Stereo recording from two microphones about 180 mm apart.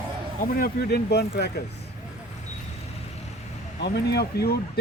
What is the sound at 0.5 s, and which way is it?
Speech, 55° left (ahead or behind).